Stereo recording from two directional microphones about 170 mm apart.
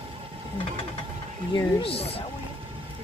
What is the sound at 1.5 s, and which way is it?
Speech, 35° left (ahead or behind).